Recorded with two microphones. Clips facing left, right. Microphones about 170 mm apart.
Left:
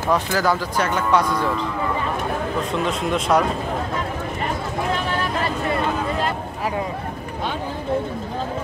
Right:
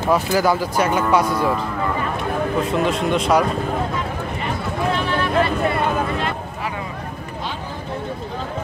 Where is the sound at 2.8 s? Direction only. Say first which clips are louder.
Right 3 dB; centre (ahead or behind).